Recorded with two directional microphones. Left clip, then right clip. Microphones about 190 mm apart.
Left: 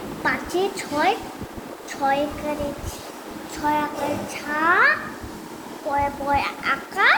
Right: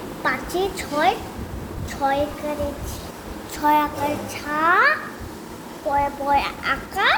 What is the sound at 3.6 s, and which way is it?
A woman's voice, 40° right (ahead or behind).